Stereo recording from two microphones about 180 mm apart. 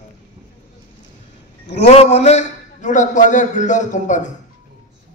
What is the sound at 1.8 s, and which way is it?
A man's voice, 35° left (ahead or behind).